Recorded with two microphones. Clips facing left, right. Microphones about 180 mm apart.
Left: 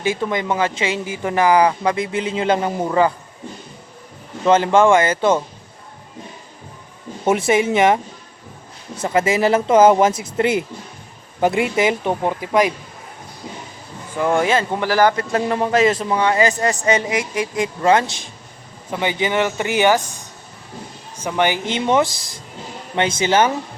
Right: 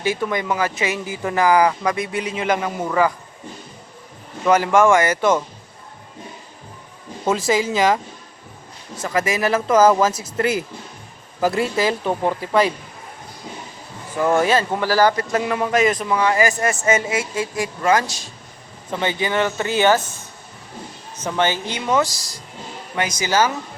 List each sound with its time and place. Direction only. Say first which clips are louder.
0.0 s speech: left 1 dB; 25° left (ahead or behind)
4.4 s speech: left 1 dB; 25° left (ahead or behind)
7.3 s speech: left 3 dB; 25° left (ahead or behind)
9.0 s speech: left 4 dB; 25° left (ahead or behind)
12.2 s speech: even; 5° left (ahead or behind)
14.4 s speech: even; 25° left (ahead or behind)
15.4 s a man's voice: left 3 dB; 30° left (ahead or behind)